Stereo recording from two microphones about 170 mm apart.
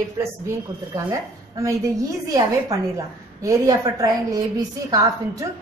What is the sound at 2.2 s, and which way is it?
A woman's voice, 20° right (ahead or behind).